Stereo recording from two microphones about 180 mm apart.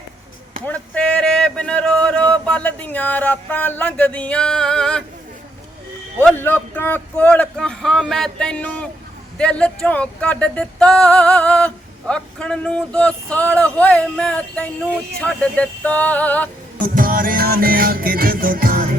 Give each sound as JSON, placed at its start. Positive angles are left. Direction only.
{"t": 0.6, "sound": "speech", "side_deg": 5}
{"t": 6.1, "sound": "music", "side_deg": 10}
{"t": 16.8, "sound": "music", "side_deg": -50}